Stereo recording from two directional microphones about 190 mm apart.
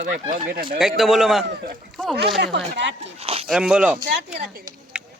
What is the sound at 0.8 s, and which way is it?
Speech, centre (ahead or behind).